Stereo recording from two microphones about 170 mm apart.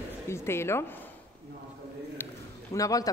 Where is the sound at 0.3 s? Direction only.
15° left (ahead or behind).